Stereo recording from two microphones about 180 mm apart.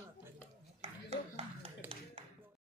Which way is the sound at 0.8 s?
35° right (ahead or behind).